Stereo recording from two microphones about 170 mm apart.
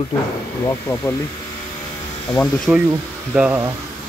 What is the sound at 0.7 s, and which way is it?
Speech, 15° left (ahead or behind).